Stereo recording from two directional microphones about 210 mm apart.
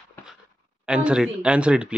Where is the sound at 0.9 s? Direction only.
5° right (ahead or behind).